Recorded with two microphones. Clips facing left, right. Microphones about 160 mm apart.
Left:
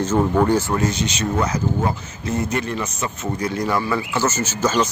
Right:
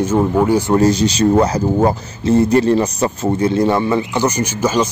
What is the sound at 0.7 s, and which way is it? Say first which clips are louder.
Speech: right 9 dB; 35° right (ahead or behind).